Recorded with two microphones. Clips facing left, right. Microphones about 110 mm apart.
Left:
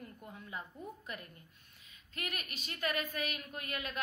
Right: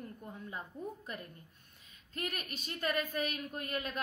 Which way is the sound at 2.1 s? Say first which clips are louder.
Right 3 dB; 40° right (ahead or behind).